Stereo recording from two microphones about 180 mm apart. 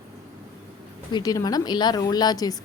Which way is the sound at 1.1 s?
20° left (ahead or behind).